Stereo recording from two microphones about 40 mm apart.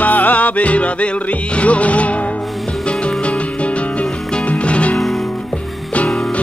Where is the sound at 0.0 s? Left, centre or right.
Left.